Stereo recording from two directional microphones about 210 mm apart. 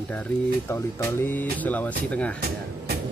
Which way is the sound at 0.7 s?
10° left (ahead or behind).